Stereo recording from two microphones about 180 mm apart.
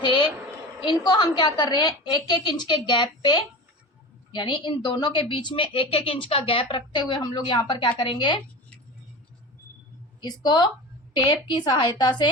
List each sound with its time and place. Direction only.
0.0 s a sound: 25° left (ahead or behind)
0.8 s a woman's voice: 25° left (ahead or behind)
10.2 s a woman's voice: 25° left (ahead or behind)